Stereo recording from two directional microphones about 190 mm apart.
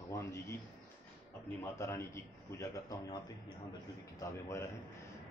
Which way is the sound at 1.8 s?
15° left (ahead or behind).